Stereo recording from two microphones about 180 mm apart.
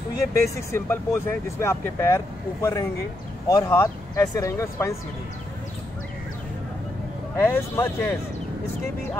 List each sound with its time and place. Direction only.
0.6 s speech: 15° left (ahead or behind)
7.3 s speech: 15° left (ahead or behind)